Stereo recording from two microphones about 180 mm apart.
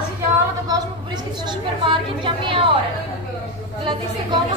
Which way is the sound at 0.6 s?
20° right (ahead or behind).